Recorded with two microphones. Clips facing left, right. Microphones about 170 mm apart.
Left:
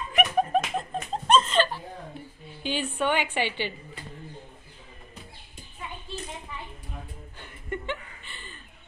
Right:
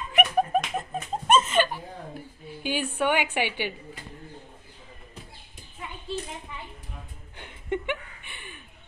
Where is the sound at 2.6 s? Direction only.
10° right (ahead or behind).